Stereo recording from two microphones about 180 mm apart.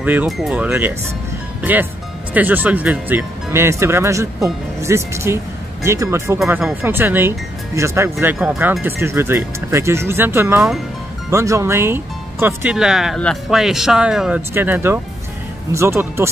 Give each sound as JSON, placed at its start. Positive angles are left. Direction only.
{"t": 0.0, "sound": "speech", "side_deg": -10}
{"t": 6.4, "sound": "speech", "side_deg": 0}
{"t": 12.7, "sound": "speech", "side_deg": 0}